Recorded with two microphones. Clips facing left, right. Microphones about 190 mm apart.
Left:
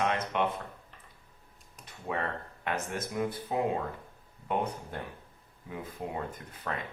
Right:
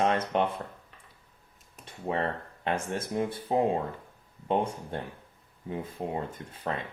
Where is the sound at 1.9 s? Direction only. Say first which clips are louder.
Right 4 dB; 30° right (ahead or behind).